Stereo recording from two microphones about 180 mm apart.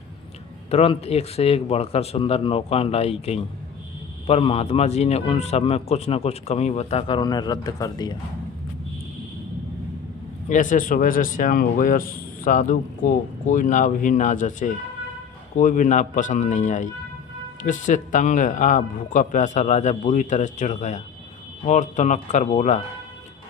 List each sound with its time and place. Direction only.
0.7 s a man's voice: 35° left (ahead or behind)
10.5 s a man's voice: 45° left (ahead or behind)